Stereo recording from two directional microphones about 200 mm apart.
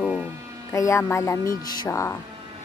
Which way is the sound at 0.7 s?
15° left (ahead or behind).